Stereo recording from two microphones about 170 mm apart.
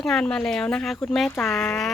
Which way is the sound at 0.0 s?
5° left (ahead or behind).